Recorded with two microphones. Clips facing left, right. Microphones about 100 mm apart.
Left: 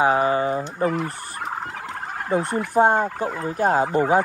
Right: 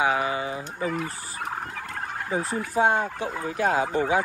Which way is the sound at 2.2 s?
60° left (ahead or behind).